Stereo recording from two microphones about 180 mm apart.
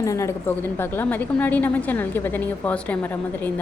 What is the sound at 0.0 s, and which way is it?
A woman's voice, 15° left (ahead or behind).